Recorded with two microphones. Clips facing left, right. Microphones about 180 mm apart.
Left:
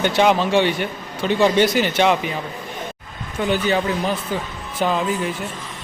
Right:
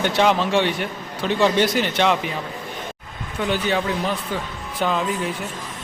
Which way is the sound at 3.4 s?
Centre (ahead or behind).